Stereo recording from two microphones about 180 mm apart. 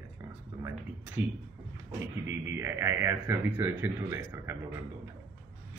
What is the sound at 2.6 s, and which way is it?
A man's voice, 15° right (ahead or behind).